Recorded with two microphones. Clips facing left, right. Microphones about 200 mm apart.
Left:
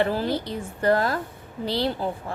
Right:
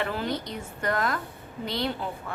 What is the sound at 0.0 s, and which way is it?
A woman's voice, 35° left (ahead or behind).